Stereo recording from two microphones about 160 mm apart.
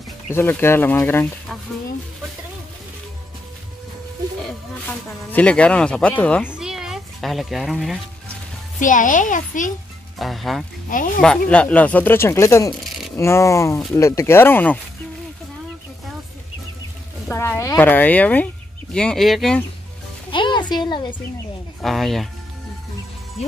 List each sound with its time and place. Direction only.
0.3 s speech: 15° left (ahead or behind)
4.8 s speech: 5° left (ahead or behind)
6.5 s a sound: 5° right (ahead or behind)
8.7 s a child's voice: 55° left (ahead or behind)
10.1 s speech: centre (ahead or behind); by 12.7 s 15° left (ahead or behind)
12.8 s a sound: centre (ahead or behind)
13.1 s speech: 20° left (ahead or behind)
17.3 s speech: 15° left (ahead or behind)
20.2 s a woman's voice: 30° left (ahead or behind)
21.8 s speech: centre (ahead or behind)